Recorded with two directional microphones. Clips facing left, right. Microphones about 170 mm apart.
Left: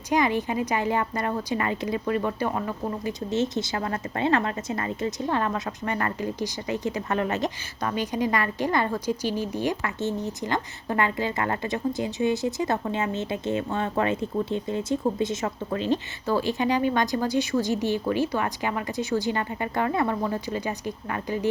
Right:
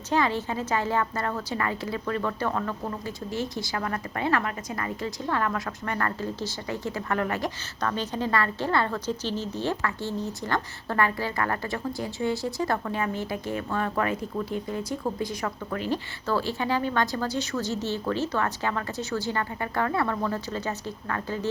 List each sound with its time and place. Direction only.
0.1 s a woman's voice: 15° left (ahead or behind)